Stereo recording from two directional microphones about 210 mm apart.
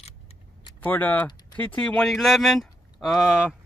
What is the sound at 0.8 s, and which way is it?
Speech, 10° left (ahead or behind).